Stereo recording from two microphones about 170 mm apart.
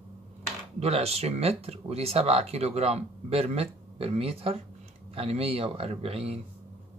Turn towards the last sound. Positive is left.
turn(degrees=-35)  # may be behind; listen again after turning